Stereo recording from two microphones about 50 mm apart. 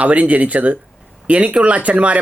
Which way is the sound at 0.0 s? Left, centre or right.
Right.